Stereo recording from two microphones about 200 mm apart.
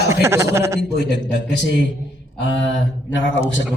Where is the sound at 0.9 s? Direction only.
60° left (ahead or behind).